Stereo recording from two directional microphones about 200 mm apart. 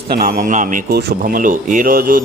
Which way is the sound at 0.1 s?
45° right (ahead or behind).